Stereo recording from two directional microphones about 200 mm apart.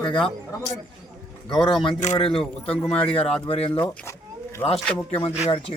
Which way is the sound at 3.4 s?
30° left (ahead or behind).